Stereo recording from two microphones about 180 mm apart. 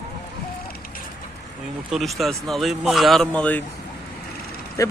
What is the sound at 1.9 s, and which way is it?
Speech, centre (ahead or behind).